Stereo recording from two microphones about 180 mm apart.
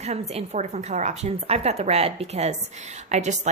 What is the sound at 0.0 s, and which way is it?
A woman's voice, 35° right (ahead or behind).